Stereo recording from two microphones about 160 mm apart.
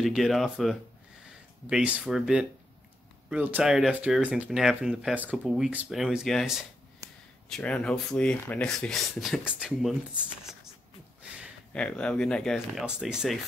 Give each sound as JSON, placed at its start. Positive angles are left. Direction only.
{"t": 0.0, "sound": "speech", "side_deg": 0}
{"t": 7.0, "sound": "a sound", "side_deg": -20}
{"t": 7.4, "sound": "speech", "side_deg": 5}
{"t": 11.7, "sound": "speech", "side_deg": 5}